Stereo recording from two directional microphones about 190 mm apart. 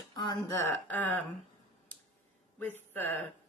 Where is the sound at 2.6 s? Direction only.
10° left (ahead or behind).